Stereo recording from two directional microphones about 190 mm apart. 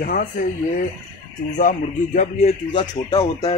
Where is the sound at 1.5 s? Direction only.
40° left (ahead or behind).